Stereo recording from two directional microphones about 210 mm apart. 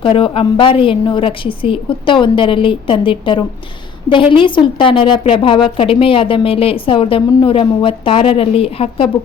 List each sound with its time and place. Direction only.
0.0 s a woman's voice: 25° left (ahead or behind)